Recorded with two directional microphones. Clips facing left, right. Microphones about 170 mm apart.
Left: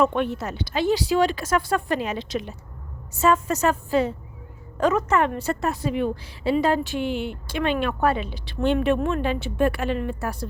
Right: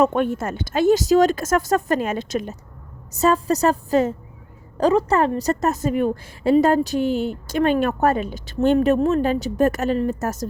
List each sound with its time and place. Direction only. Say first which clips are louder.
0.0 s a woman's voice: right 3 dB; 45° right (ahead or behind)